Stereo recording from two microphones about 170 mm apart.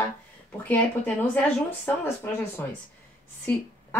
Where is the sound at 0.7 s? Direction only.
10° left (ahead or behind).